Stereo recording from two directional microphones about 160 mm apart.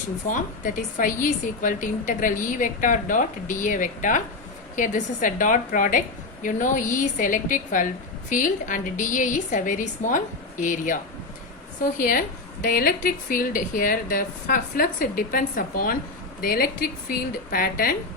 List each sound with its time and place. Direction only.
0.3 s a woman's voice: 55° left (ahead or behind)